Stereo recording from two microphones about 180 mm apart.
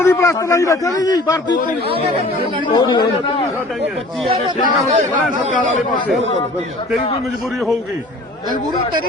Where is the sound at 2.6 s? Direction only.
25° left (ahead or behind).